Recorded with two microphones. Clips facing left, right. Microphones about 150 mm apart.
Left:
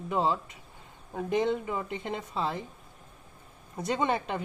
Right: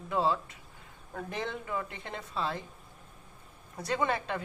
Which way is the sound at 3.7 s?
20° left (ahead or behind).